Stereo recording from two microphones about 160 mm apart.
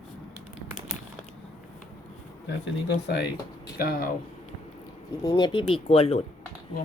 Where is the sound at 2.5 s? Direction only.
90° left.